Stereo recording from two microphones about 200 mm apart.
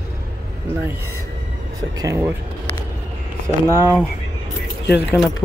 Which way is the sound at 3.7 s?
15° right (ahead or behind).